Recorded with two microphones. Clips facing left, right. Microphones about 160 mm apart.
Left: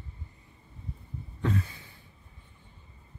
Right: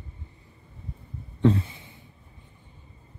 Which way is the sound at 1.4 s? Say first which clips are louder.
Right 9 dB; 25° right (ahead or behind).